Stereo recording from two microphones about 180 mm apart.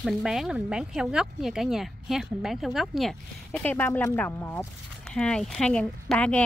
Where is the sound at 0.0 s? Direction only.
5° right (ahead or behind).